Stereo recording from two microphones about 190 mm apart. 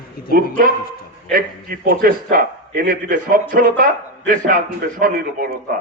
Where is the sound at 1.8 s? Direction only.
50° right (ahead or behind).